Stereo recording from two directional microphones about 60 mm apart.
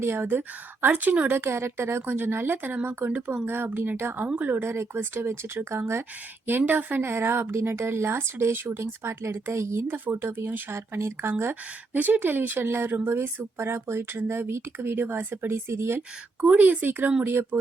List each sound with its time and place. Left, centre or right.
0.0 s speech: right
1.3 s speech: right
6.6 s speech: right
7.0 s speech: right
9.9 s speech: right
11.9 s speech: right
16.4 s speech: right